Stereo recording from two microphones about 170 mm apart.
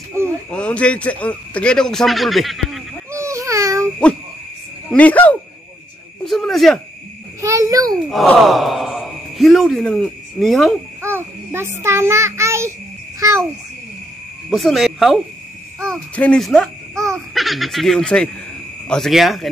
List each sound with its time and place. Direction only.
0.5 s a man's voice: 5° left (ahead or behind)
3.1 s babbling: 15° right (ahead or behind)
4.9 s a man's voice: 10° left (ahead or behind)
7.4 s a child's voice: 20° right (ahead or behind)
8.1 s speech: centre (ahead or behind)
11.0 s a child's voice: 15° right (ahead or behind)
14.5 s a man's voice: centre (ahead or behind)
16.9 s baby laughter: 15° right (ahead or behind)
17.3 s a man's voice: centre (ahead or behind)